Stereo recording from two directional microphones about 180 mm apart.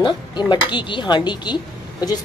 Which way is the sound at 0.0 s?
25° left (ahead or behind).